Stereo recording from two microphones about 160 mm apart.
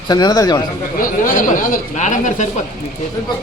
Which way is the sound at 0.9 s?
60° left (ahead or behind).